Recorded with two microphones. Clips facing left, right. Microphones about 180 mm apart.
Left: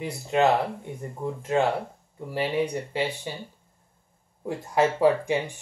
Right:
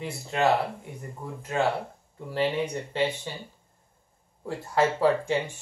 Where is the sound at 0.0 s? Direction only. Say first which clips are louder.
Left 4 dB; 20° left (ahead or behind).